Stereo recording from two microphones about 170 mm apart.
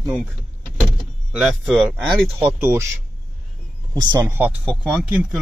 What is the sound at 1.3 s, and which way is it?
Speech, 5° right (ahead or behind).